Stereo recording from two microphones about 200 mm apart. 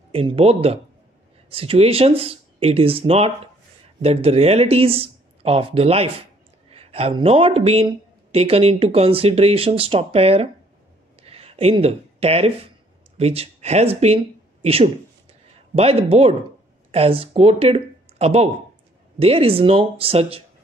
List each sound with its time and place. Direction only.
0.1 s speech: 30° right (ahead or behind)